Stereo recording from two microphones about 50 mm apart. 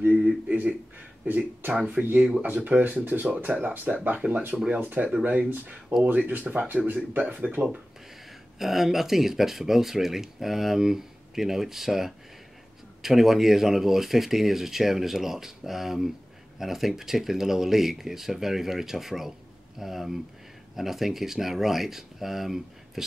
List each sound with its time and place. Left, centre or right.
0.0 s a sound: right
1.2 s speech: right
8.5 s speech: centre